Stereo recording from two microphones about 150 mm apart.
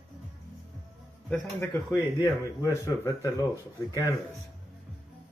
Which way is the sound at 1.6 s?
15° left (ahead or behind).